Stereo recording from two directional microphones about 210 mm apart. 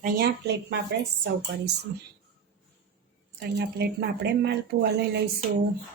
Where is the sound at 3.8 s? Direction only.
50° right (ahead or behind).